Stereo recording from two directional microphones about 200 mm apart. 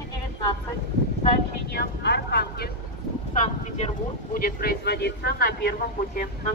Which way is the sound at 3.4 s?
35° left (ahead or behind).